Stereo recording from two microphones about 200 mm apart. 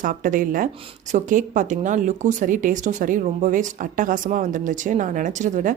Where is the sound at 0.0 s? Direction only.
40° right (ahead or behind).